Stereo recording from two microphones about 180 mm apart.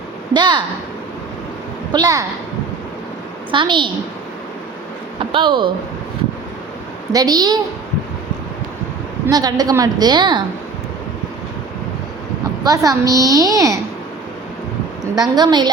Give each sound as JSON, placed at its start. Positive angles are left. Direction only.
{"t": 0.3, "sound": "a woman's voice", "side_deg": -25}
{"t": 1.9, "sound": "a woman's voice", "side_deg": -20}
{"t": 3.5, "sound": "a woman's voice", "side_deg": -25}
{"t": 5.3, "sound": "a woman's voice", "side_deg": -25}
{"t": 7.1, "sound": "a woman's voice", "side_deg": -20}
{"t": 9.2, "sound": "a woman's voice", "side_deg": -20}
{"t": 12.6, "sound": "a woman's voice", "side_deg": -20}
{"t": 15.2, "sound": "a woman's voice", "side_deg": -25}